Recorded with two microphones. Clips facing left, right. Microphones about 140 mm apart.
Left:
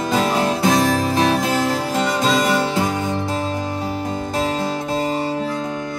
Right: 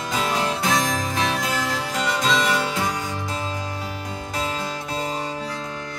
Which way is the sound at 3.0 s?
30° left (ahead or behind).